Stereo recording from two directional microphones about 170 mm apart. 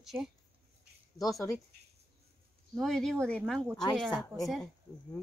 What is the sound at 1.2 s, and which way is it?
Speech, 20° left (ahead or behind).